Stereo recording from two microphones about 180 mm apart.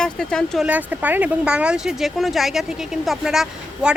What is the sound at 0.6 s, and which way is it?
Speech, 10° right (ahead or behind).